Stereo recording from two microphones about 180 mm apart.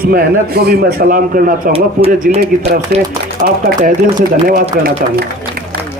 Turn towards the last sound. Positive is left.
turn(degrees=-55)  # may be behind; listen again after turning